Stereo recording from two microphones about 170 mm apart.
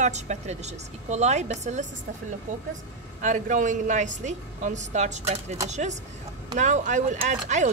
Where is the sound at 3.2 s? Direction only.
50° right (ahead or behind).